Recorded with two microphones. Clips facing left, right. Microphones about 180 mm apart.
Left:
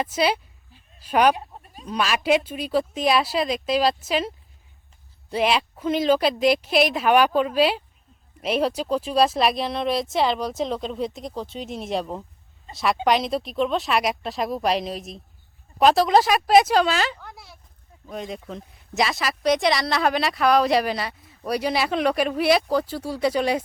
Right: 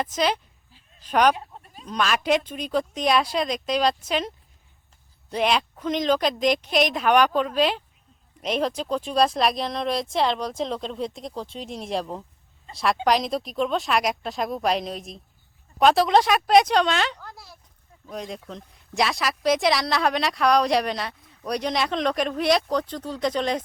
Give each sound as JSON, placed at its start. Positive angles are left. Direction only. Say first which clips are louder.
{"t": 0.0, "sound": "a woman's voice", "louder": "left 2 dB", "side_deg": 10}
{"t": 5.3, "sound": "a woman's voice", "louder": "left 1 dB", "side_deg": 5}